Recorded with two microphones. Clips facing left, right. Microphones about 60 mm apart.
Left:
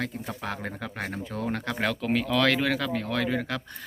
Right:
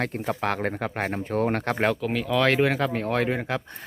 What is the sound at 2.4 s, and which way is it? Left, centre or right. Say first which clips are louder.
Speech: right 6 dB; right.